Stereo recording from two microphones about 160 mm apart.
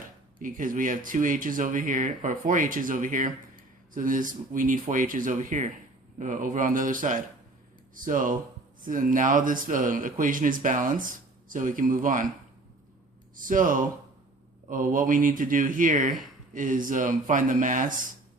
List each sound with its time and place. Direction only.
0.3 s speech: 55° right (ahead or behind)
13.3 s speech: 55° right (ahead or behind)